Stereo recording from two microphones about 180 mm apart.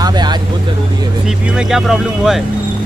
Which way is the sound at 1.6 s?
5° right (ahead or behind).